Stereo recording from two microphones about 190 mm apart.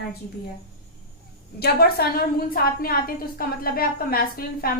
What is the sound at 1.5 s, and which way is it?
A woman's voice, 55° left (ahead or behind).